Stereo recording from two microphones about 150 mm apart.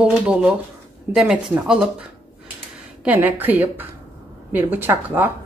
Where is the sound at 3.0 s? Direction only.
10° right (ahead or behind).